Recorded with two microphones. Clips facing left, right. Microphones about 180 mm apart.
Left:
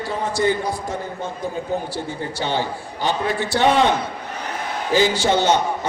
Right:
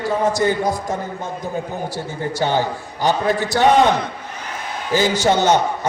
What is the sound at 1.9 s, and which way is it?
A man's voice, 40° right (ahead or behind).